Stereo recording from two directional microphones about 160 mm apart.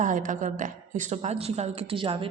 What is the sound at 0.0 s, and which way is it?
A woman's voice, 55° right (ahead or behind).